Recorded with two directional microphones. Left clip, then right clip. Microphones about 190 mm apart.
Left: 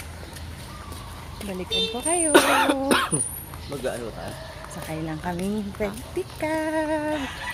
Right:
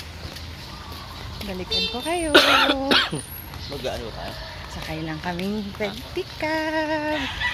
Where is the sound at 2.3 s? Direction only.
55° left (ahead or behind).